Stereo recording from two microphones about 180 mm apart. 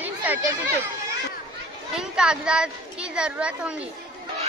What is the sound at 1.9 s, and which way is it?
A woman's voice, 5° right (ahead or behind).